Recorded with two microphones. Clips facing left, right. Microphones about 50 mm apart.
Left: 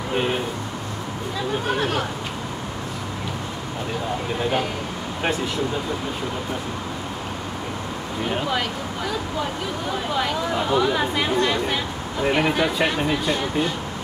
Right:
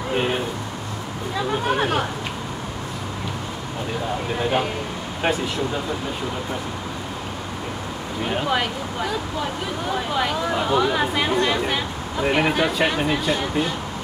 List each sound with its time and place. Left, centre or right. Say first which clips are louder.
0.1 s a sound: right 1 dB; centre
1.8 s speech: right 2 dB; centre
4.4 s speech: right 2 dB; centre
8.5 s speech: right 2 dB; centre